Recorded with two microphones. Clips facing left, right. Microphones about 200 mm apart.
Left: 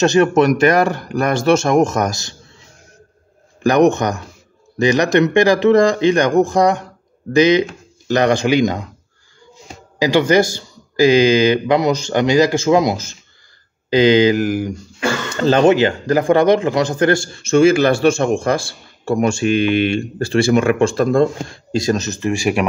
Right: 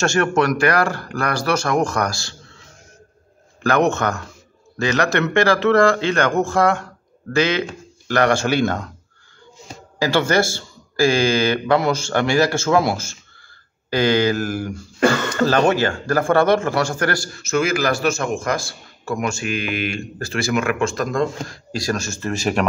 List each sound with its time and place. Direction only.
0.0 s a man's voice: 15° left (ahead or behind)
3.6 s speech: 15° left (ahead or behind)
9.9 s a man's voice: 15° left (ahead or behind)